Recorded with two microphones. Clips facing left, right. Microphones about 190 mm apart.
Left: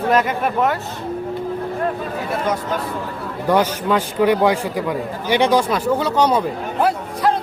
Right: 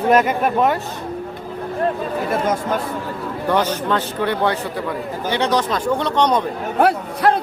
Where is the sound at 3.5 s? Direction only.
10° left (ahead or behind).